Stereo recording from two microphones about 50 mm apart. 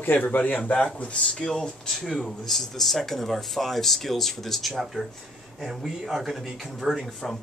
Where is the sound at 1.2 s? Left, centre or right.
Centre.